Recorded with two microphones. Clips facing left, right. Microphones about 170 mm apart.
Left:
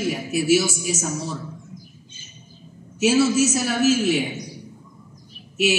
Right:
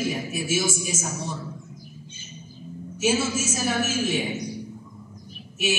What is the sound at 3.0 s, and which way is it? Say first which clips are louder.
Speech: left 7 dB; 70° left (ahead or behind).